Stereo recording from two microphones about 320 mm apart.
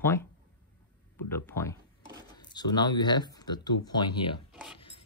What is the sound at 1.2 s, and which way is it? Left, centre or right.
Speech, centre.